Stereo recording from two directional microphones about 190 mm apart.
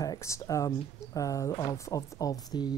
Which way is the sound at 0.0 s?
15° left (ahead or behind).